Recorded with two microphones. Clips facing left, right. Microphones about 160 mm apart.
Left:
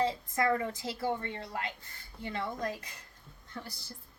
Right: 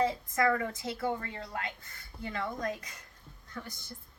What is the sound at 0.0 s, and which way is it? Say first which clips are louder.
A woman's voice: right 2 dB; 25° left (ahead or behind).